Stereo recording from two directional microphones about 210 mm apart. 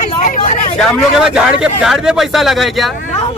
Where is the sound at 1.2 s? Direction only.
5° right (ahead or behind).